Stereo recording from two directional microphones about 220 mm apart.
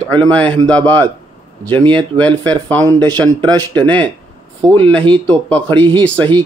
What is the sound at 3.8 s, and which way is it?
Speech, 5° left (ahead or behind).